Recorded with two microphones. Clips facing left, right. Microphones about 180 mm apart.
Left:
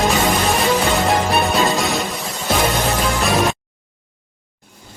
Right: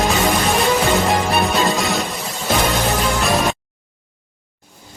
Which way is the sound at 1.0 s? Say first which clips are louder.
Left 1 dB; centre (ahead or behind).